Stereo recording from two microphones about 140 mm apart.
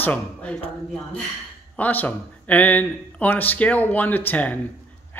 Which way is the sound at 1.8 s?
10° left (ahead or behind).